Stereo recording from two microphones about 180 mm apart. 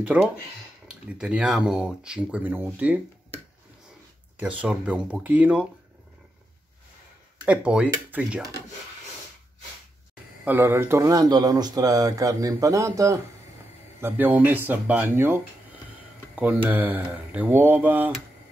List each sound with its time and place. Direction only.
0.2 s speech: 5° right (ahead or behind)
4.4 s speech: 5° right (ahead or behind)
7.4 s speech: 5° right (ahead or behind)
10.4 s speech: 10° right (ahead or behind)
16.6 s speech: 10° right (ahead or behind)